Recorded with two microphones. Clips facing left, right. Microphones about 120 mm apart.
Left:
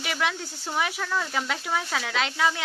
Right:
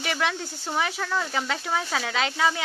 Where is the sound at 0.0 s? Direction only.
Centre (ahead or behind).